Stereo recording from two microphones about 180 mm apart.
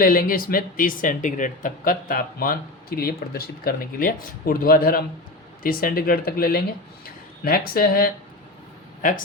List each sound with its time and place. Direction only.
0.0 s speech: 50° left (ahead or behind)